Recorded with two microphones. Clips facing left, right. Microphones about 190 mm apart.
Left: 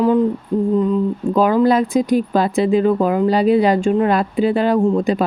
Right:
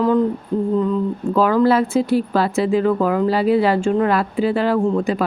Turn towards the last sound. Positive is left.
turn(degrees=20)  # may be behind; listen again after turning